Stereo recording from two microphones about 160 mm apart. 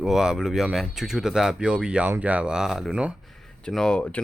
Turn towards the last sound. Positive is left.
turn(degrees=5)  # may be behind; listen again after turning